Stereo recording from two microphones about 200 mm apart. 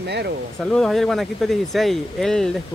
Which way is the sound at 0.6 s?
Centre (ahead or behind).